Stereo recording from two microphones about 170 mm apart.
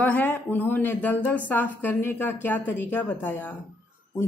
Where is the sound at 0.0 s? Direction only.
10° left (ahead or behind).